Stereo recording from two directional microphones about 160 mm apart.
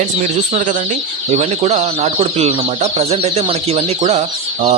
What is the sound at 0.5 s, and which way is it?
Speech, 55° right (ahead or behind).